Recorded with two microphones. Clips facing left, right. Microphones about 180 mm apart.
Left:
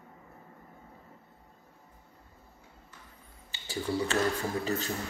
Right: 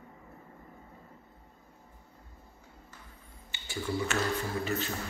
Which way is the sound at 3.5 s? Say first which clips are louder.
Left 2 dB; 35° left (ahead or behind).